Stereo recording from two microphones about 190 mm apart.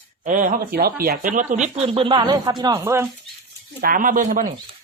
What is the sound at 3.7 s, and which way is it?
Speech, 45° right (ahead or behind).